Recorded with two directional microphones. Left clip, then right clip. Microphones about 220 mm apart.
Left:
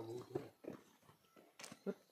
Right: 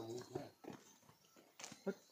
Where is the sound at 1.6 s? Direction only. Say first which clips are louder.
Right 1 dB; 45° left (ahead or behind).